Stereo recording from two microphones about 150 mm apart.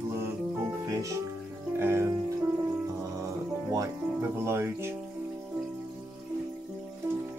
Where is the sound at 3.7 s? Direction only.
20° right (ahead or behind).